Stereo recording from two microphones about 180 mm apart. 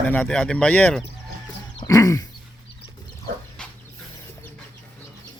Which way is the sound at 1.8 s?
20° left (ahead or behind).